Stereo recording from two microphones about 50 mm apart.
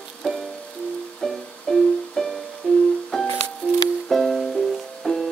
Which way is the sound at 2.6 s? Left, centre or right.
Left.